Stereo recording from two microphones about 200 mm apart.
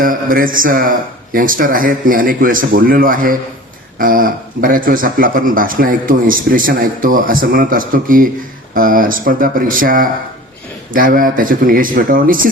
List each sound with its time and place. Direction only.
0.0 s speech: 45° right (ahead or behind)